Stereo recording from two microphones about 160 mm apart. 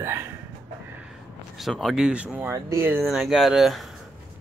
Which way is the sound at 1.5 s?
Centre (ahead or behind).